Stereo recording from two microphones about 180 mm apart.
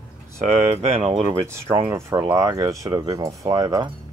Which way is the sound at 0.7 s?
35° right (ahead or behind).